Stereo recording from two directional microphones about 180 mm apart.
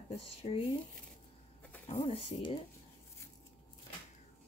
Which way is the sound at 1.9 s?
35° left (ahead or behind).